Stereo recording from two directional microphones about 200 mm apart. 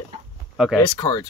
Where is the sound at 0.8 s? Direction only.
20° left (ahead or behind).